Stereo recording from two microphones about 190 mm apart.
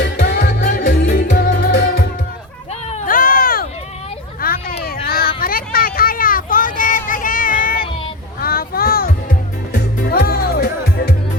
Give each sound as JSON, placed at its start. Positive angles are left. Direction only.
{"t": 0.0, "sound": "music", "side_deg": 60}
{"t": 2.9, "sound": "a sound", "side_deg": 45}
{"t": 9.7, "sound": "music", "side_deg": 55}